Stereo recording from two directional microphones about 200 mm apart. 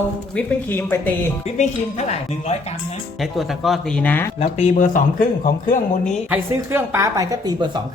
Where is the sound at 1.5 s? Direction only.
35° left (ahead or behind).